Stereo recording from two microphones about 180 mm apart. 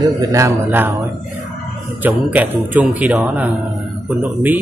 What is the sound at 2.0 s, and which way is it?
Speech, 10° right (ahead or behind).